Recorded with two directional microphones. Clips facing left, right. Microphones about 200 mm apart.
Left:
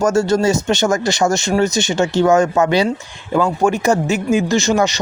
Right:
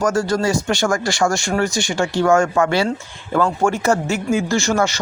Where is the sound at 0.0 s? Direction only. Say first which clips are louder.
Left 4 dB; 25° left (ahead or behind).